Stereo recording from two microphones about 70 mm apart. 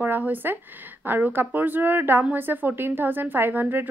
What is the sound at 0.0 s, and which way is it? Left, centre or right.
A woman's voice, right.